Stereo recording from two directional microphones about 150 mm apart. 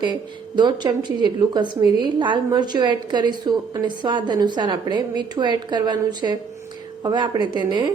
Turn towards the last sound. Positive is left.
turn(degrees=-30)  # may be behind; listen again after turning